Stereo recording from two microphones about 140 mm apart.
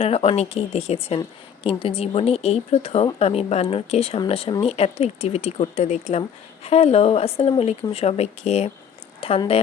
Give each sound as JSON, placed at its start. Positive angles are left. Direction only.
{"t": 0.0, "sound": "speech", "side_deg": 45}